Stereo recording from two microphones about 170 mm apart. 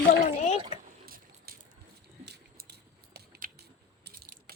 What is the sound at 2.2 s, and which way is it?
Biting, 75° right (ahead or behind).